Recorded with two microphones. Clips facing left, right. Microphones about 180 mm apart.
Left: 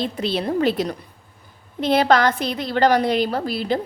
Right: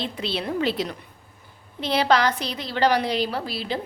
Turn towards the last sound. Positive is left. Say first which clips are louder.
# left 6 dB
turn(degrees=50)  # may be behind; listen again after turning